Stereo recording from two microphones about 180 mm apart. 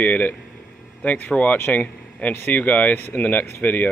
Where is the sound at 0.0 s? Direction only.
10° left (ahead or behind).